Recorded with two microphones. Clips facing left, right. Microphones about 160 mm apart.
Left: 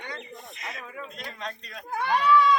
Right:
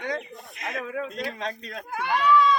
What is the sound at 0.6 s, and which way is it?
Speech, 60° right (ahead or behind).